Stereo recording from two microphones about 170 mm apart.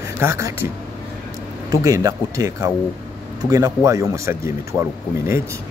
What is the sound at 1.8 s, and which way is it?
Speech, 20° right (ahead or behind).